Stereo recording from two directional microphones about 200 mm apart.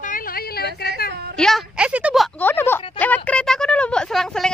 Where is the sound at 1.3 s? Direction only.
Centre (ahead or behind).